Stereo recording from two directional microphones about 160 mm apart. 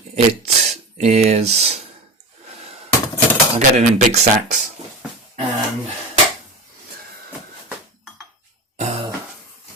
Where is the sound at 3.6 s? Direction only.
45° right (ahead or behind).